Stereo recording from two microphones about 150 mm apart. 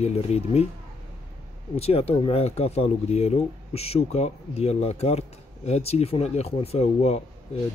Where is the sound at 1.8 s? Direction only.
40° left (ahead or behind).